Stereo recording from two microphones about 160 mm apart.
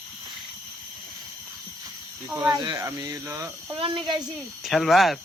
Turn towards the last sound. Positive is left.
turn(degrees=0)  # may be behind; listen again after turning